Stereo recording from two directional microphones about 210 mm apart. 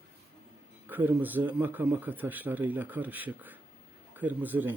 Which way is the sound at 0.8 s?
10° right (ahead or behind).